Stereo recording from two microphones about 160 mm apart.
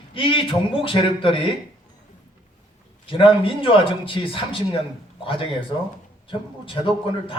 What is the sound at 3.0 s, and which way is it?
A man's voice, 35° left (ahead or behind).